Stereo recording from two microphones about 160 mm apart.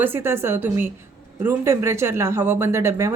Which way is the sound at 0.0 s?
15° right (ahead or behind).